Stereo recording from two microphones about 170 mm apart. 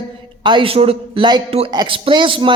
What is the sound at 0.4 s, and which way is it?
Speech, 30° right (ahead or behind).